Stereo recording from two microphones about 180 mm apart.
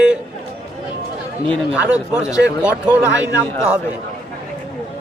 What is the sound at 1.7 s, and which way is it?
Speech, 5° right (ahead or behind).